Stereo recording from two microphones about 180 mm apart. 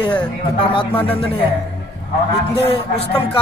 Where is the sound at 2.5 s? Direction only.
30° left (ahead or behind).